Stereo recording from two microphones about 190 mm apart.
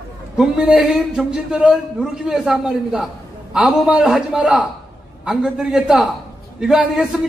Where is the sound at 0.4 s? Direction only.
5° right (ahead or behind).